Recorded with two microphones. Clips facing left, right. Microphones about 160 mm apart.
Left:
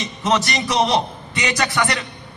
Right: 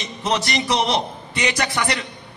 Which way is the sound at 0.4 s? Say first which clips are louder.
Right 1 dB; 30° right (ahead or behind).